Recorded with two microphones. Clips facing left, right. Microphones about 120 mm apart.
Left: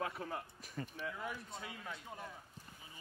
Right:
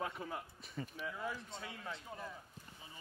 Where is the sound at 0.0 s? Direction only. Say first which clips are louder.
Left 1 dB; centre (ahead or behind).